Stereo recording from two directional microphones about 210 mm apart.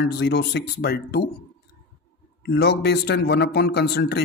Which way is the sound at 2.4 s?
55° left (ahead or behind).